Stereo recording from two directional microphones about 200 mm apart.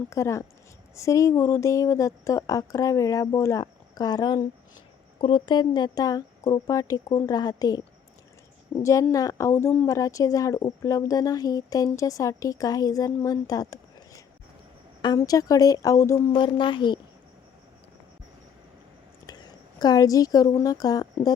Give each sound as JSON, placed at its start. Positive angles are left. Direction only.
{"t": 0.1, "sound": "a woman's voice", "side_deg": 15}
{"t": 8.8, "sound": "a woman's voice", "side_deg": 15}
{"t": 19.2, "sound": "a woman's voice", "side_deg": 20}